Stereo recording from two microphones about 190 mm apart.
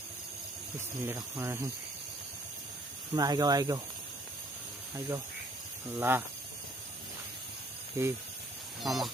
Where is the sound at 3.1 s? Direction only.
20° right (ahead or behind).